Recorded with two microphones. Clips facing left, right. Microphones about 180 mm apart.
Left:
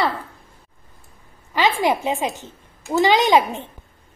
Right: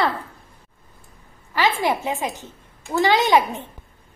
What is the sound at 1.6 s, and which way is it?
A woman's voice, 20° left (ahead or behind).